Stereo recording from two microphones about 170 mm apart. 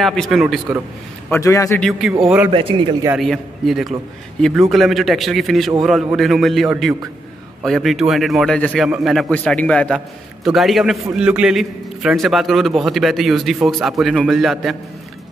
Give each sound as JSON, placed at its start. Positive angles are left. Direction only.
{"t": 0.0, "sound": "a man's voice", "side_deg": 0}
{"t": 1.3, "sound": "a man's voice", "side_deg": 20}
{"t": 1.8, "sound": "a man's voice", "side_deg": 0}
{"t": 2.5, "sound": "a man's voice", "side_deg": -30}
{"t": 3.2, "sound": "a man's voice", "side_deg": 0}